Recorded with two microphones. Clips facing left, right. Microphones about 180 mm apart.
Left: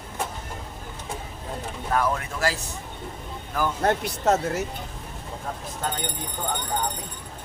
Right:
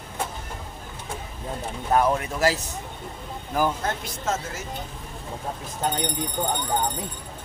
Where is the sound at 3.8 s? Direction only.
65° left (ahead or behind).